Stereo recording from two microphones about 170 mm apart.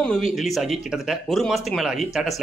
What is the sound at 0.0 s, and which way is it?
Speech, 5° left (ahead or behind).